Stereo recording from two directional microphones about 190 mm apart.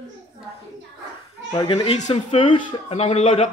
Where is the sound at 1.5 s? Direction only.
25° left (ahead or behind).